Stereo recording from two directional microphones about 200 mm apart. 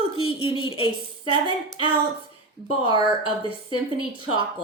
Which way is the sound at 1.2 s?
25° right (ahead or behind).